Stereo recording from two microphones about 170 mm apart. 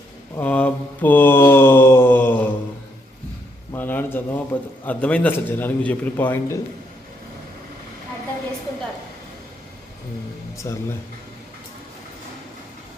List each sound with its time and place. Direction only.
0.3 s mantra: 10° left (ahead or behind)
3.7 s a sound: 10° left (ahead or behind)
4.5 s a man's voice: 10° left (ahead or behind)
10.7 s speech: 20° left (ahead or behind)